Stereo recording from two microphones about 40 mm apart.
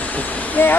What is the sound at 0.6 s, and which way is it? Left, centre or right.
Speech, left.